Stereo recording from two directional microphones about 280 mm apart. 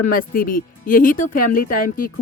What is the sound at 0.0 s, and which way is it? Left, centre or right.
Speech, left.